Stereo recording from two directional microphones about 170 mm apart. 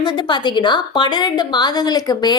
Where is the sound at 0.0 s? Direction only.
25° left (ahead or behind).